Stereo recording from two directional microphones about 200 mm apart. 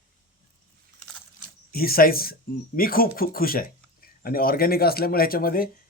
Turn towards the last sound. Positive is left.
turn(degrees=45)  # may be behind; listen again after turning